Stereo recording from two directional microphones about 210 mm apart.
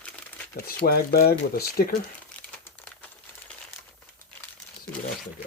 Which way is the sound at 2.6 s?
10° left (ahead or behind).